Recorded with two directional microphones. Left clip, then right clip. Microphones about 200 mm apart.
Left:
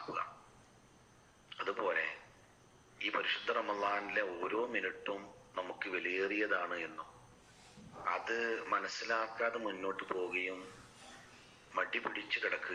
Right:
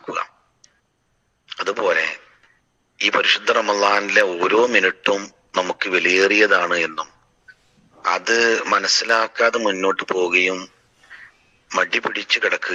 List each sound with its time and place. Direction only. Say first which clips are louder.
1.5 s a sound: right 17 dB; 55° right (ahead or behind)
3.0 s a man's voice: right 19 dB; 55° right (ahead or behind)
11.7 s a man's voice: right 17 dB; 55° right (ahead or behind)